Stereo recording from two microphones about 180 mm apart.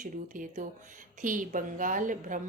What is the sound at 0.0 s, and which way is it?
A woman's voice, 45° right (ahead or behind).